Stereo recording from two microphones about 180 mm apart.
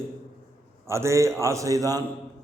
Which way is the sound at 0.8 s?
15° right (ahead or behind).